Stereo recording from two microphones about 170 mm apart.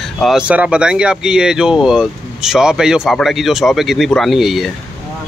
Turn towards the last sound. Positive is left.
turn(degrees=0)  # may be behind; listen again after turning